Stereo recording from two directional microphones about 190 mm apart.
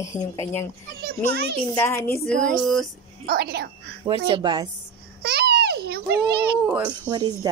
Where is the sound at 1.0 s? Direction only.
60° right (ahead or behind).